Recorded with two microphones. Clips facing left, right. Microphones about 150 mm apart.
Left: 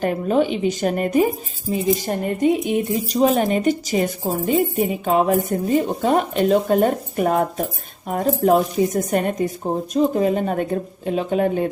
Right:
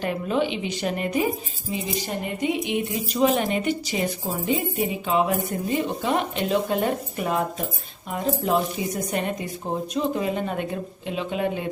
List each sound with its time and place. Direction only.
0.0 s a woman's voice: 45° left (ahead or behind)